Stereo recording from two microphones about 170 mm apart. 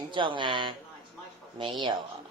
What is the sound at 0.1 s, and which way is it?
Speech, 30° right (ahead or behind).